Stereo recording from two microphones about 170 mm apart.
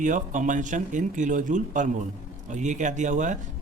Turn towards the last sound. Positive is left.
turn(degrees=-45)  # may be behind; listen again after turning